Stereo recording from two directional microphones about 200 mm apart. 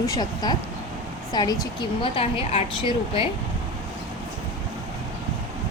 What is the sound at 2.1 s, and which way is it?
Speech, 30° left (ahead or behind).